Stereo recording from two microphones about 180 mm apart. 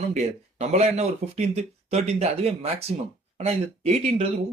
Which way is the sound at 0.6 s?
35° right (ahead or behind).